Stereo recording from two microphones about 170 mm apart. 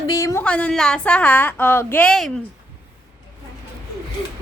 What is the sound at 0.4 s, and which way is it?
A woman's voice, 5° left (ahead or behind).